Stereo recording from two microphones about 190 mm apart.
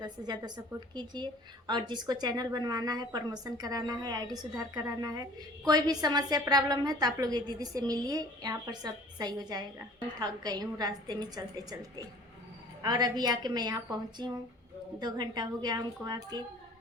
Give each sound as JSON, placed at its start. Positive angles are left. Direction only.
{"t": 0.0, "sound": "a woman's voice", "side_deg": -20}